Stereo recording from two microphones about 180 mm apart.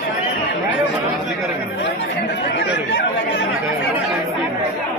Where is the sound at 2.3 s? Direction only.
75° left (ahead or behind).